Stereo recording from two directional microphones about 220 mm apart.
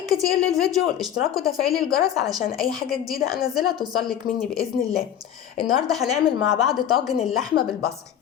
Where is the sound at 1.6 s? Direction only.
15° right (ahead or behind).